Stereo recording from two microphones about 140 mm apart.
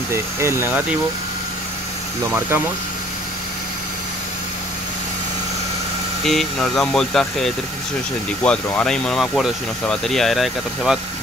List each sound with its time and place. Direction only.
0.1 s speech: 20° right (ahead or behind)
6.2 s speech: 5° left (ahead or behind)